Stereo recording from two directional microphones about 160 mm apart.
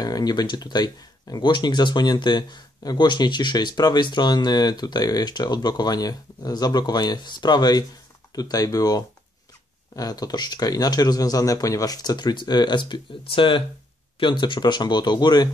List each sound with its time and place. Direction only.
0.0 s speech: 25° left (ahead or behind)